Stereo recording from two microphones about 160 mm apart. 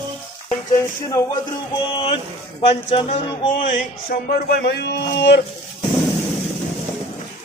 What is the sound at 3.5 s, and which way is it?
A man's voice, 55° left (ahead or behind).